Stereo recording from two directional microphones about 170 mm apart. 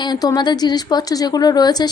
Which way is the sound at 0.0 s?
25° left (ahead or behind).